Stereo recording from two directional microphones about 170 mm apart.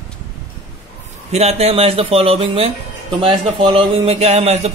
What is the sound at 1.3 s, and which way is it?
Speech, 40° right (ahead or behind).